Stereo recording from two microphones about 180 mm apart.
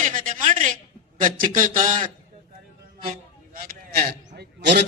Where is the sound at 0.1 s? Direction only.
50° right (ahead or behind).